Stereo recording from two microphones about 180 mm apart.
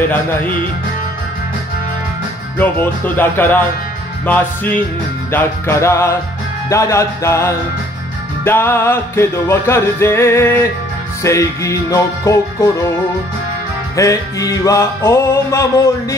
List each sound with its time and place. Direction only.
0.1 s music: 10° left (ahead or behind)
2.6 s music: 10° left (ahead or behind)
13.9 s music: 20° left (ahead or behind)